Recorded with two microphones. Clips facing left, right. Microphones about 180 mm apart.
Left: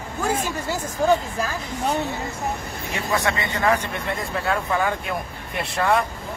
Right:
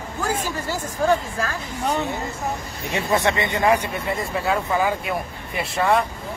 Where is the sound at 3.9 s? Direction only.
Centre (ahead or behind).